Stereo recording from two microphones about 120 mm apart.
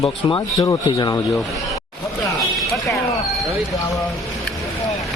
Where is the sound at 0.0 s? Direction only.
40° left (ahead or behind).